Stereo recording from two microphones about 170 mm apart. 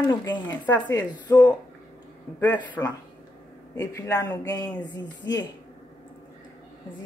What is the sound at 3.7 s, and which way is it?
Speech, 20° left (ahead or behind).